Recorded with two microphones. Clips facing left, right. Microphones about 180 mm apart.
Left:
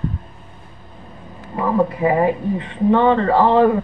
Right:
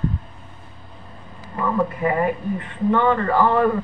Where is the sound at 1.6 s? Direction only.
25° left (ahead or behind).